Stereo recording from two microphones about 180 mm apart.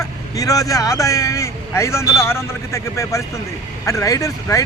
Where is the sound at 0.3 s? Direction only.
20° left (ahead or behind).